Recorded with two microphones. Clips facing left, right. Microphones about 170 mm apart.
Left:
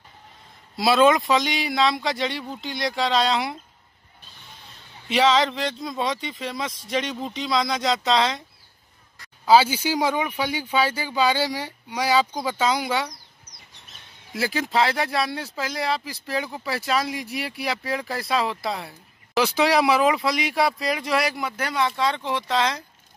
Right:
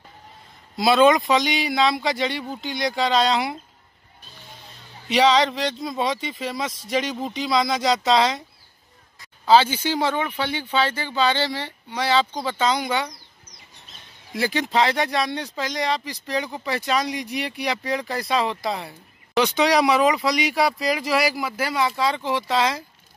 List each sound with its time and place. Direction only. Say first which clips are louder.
0.7 s speech: right 1 dB; centre (ahead or behind)
5.0 s speech: right 2 dB; centre (ahead or behind)
9.5 s speech: even; 10° left (ahead or behind)
14.3 s speech: right 1 dB; centre (ahead or behind)